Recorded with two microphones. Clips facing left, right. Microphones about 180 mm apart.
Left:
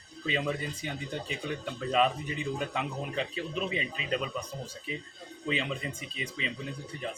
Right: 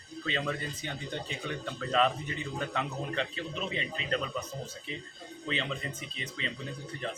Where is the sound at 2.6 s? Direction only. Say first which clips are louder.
Left 1 dB; 10° left (ahead or behind).